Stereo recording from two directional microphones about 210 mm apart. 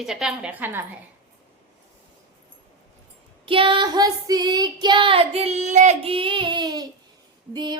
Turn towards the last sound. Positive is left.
turn(degrees=-20)  # may be behind; listen again after turning